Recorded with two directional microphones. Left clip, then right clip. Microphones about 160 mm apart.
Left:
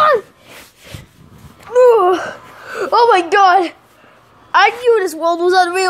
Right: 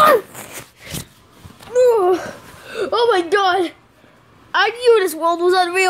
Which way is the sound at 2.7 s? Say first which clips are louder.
Left 5 dB; 15° right (ahead or behind).